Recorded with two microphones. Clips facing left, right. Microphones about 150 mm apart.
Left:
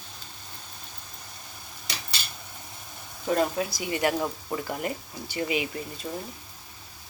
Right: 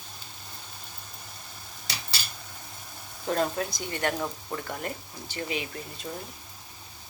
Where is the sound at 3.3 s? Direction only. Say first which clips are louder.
Left 2 dB; 5° left (ahead or behind).